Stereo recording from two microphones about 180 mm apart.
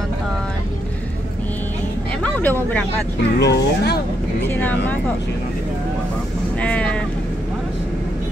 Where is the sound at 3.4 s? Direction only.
65° left (ahead or behind).